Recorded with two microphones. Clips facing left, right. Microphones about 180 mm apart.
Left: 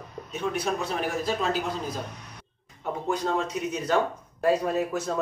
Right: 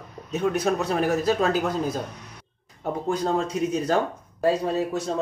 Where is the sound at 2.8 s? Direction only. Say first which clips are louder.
Right 3 dB; 35° right (ahead or behind).